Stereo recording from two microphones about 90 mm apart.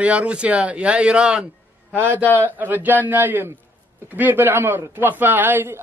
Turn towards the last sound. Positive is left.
turn(degrees=-20)  # may be behind; listen again after turning